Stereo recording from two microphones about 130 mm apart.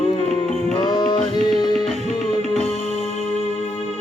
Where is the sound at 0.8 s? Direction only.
35° left (ahead or behind).